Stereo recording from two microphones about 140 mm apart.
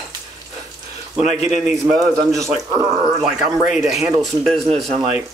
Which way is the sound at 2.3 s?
25° right (ahead or behind).